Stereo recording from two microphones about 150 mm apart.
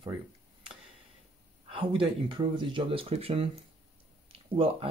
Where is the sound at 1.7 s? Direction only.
35° right (ahead or behind).